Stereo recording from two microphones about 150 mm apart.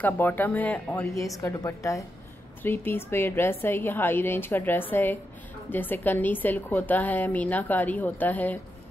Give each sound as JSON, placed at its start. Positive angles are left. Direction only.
{"t": 0.0, "sound": "a woman's voice", "side_deg": 10}